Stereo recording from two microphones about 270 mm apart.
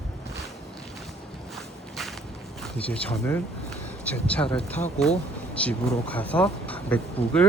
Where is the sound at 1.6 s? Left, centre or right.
Centre.